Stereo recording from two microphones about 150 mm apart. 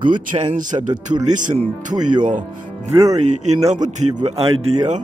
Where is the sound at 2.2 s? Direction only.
60° right (ahead or behind).